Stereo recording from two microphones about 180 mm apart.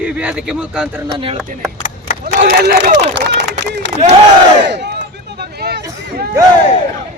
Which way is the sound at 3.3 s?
75° right (ahead or behind).